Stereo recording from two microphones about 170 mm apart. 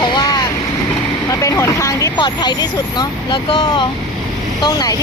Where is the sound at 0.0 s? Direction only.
25° left (ahead or behind).